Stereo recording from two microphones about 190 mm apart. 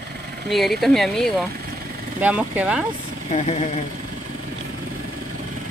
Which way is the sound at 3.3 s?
35° left (ahead or behind).